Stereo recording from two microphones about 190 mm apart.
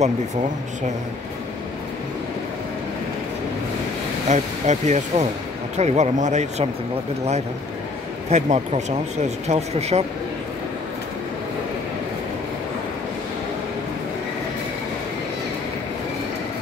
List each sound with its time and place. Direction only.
4.3 s speech: 35° right (ahead or behind)
8.3 s speech: 35° right (ahead or behind)